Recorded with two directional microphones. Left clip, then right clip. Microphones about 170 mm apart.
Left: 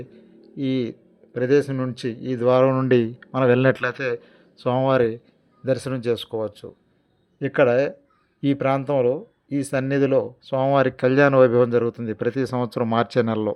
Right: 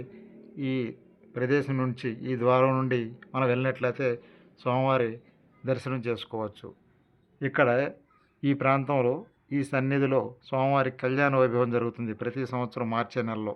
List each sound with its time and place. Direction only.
0.0 s a man's voice: 30° left (ahead or behind)
2.9 s speech: 45° left (ahead or behind); by 10.8 s 25° left (ahead or behind)
10.8 s speech: 40° left (ahead or behind)